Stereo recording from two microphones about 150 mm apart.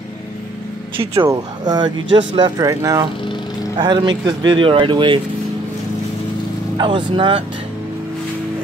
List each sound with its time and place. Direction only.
1.2 s speech: 25° right (ahead or behind)
6.8 s speech: 30° right (ahead or behind)